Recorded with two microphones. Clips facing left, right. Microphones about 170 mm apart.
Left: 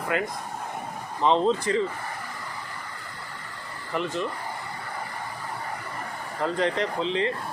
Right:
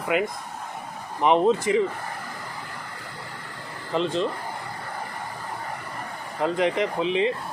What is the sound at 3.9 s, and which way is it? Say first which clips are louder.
Speech: right 4 dB; 25° right (ahead or behind).